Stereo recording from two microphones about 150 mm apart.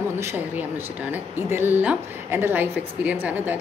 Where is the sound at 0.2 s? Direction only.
15° right (ahead or behind).